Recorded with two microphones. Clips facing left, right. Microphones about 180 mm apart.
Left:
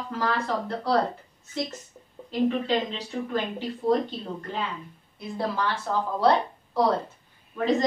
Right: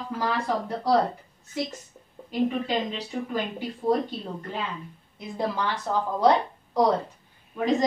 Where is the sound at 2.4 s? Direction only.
10° right (ahead or behind).